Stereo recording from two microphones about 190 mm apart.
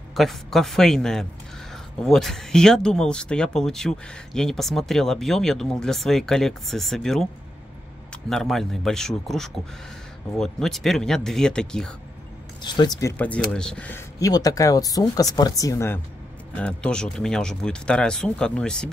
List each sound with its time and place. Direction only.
0.1 s speech: centre (ahead or behind)
12.6 s speech: 20° left (ahead or behind)
13.2 s speech: 5° left (ahead or behind)